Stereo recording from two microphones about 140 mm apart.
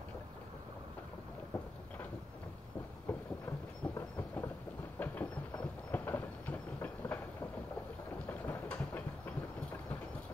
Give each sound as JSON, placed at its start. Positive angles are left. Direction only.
{"t": 3.1, "sound": "train", "side_deg": 15}
{"t": 4.9, "sound": "a sound", "side_deg": 15}
{"t": 8.3, "sound": "train", "side_deg": 10}